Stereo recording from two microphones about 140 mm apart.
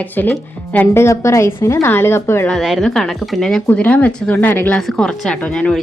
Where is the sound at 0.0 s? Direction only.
15° left (ahead or behind).